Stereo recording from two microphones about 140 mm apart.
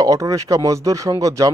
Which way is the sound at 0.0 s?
25° right (ahead or behind).